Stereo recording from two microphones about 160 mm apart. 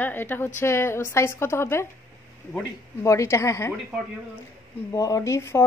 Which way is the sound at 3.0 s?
20° left (ahead or behind).